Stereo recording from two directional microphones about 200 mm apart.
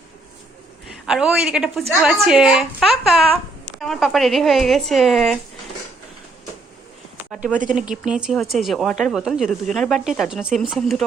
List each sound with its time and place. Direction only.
1.0 s a woman's voice: 5° right (ahead or behind)
7.2 s a sound: 5° right (ahead or behind)
7.6 s speech: 40° right (ahead or behind)
7.9 s a woman's voice: 5° right (ahead or behind)